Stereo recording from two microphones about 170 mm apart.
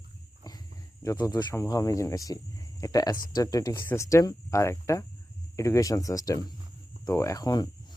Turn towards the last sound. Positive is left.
turn(degrees=25)  # may be behind; listen again after turning